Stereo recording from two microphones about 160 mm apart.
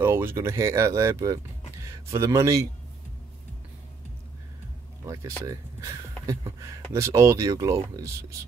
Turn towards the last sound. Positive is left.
turn(degrees=-20)  # may be behind; listen again after turning